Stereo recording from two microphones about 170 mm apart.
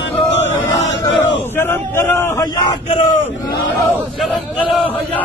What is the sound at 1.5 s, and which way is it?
Speech, 15° left (ahead or behind).